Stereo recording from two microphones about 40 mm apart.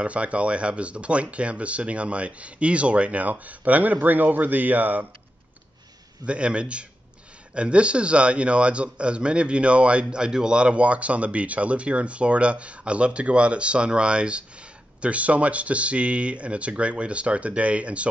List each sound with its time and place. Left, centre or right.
0.0 s speech: right
6.2 s speech: right
10.0 s speech: right